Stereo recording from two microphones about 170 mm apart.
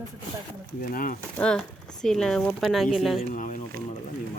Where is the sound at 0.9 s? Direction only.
55° left (ahead or behind).